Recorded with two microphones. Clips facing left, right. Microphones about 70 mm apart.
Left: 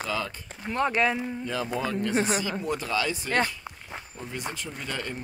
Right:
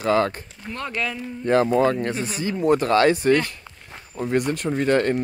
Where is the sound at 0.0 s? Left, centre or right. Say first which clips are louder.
Right 11 dB; right.